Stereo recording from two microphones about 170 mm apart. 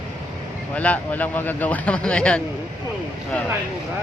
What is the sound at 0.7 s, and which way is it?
Speech, 10° left (ahead or behind).